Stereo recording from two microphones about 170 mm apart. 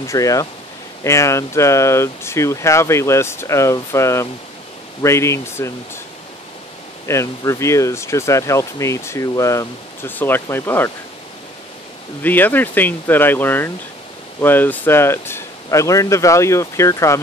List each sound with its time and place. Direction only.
0.0 s speech: 20° left (ahead or behind)
7.1 s speech: 15° left (ahead or behind)
12.2 s speech: 10° left (ahead or behind)